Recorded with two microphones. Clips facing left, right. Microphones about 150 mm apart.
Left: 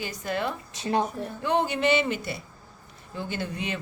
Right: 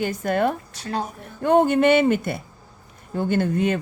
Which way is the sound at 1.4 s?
50° right (ahead or behind).